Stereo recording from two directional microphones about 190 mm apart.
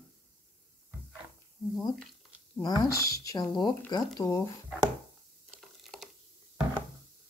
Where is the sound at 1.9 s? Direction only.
5° left (ahead or behind).